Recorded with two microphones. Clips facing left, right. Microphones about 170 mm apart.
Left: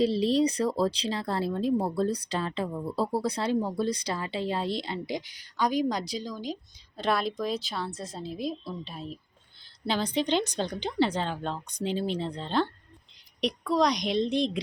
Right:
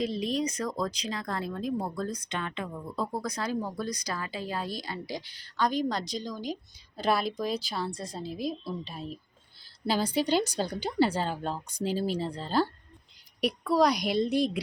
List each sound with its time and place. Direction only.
0.0 s a woman's voice: 30° left (ahead or behind); by 14.6 s 5° right (ahead or behind)